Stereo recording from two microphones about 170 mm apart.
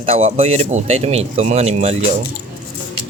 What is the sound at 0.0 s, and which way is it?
A man's voice, 35° right (ahead or behind).